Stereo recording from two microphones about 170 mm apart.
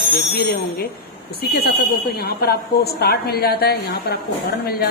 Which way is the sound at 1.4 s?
70° left (ahead or behind).